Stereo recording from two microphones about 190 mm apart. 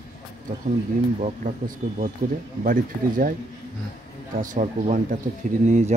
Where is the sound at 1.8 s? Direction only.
45° right (ahead or behind).